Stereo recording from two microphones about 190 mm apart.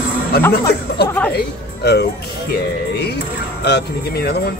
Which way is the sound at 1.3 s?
60° left (ahead or behind).